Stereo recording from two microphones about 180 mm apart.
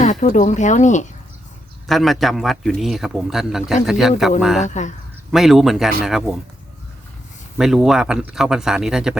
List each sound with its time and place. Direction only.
0.0 s speech: 40° left (ahead or behind)
1.9 s speech: centre (ahead or behind)
4.6 s speech: 40° left (ahead or behind)
5.3 s speech: centre (ahead or behind)
7.6 s speech: 5° right (ahead or behind)